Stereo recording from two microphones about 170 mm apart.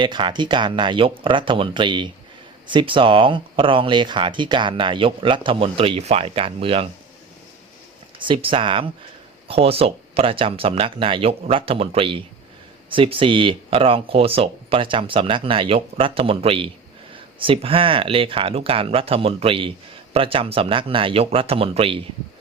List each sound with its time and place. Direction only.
0.0 s speech: 30° right (ahead or behind)
8.2 s speech: 30° right (ahead or behind)